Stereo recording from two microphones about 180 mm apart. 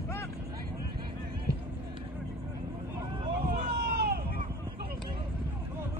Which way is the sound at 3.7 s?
60° right (ahead or behind).